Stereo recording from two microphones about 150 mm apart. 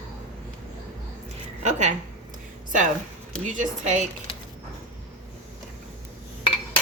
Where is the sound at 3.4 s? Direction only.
55° right (ahead or behind).